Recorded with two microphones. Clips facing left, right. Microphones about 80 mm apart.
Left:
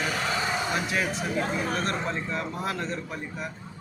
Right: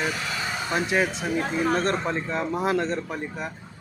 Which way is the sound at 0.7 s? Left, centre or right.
Right.